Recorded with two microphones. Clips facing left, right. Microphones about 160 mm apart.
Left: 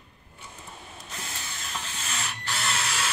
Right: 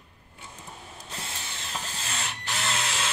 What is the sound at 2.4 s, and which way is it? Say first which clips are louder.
Drill: even; 25° right (ahead or behind).